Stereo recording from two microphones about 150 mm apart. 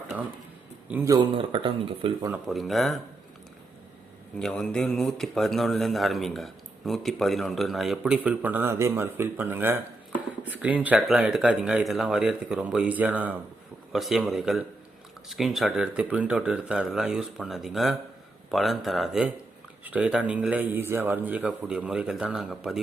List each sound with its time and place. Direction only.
1.0 s speech: 25° right (ahead or behind)
2.3 s a man's voice: centre (ahead or behind)
4.4 s a man's voice: 5° left (ahead or behind)